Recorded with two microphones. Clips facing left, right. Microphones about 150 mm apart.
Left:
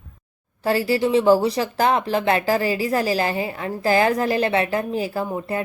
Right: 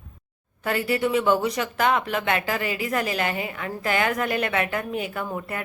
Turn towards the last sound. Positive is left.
turn(degrees=25)  # may be behind; listen again after turning